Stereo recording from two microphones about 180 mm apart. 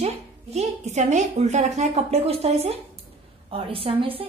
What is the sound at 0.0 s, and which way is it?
A woman's voice, 35° right (ahead or behind).